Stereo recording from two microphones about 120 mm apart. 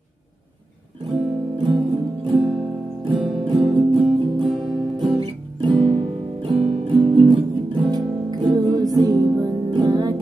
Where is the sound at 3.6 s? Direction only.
45° right (ahead or behind).